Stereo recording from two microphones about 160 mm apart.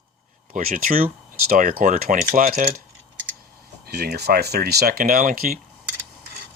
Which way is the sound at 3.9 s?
85° right.